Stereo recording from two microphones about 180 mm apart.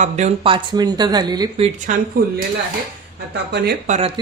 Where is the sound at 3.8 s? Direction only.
40° right (ahead or behind).